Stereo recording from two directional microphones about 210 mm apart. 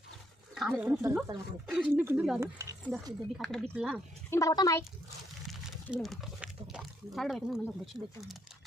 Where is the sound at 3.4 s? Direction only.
Centre (ahead or behind).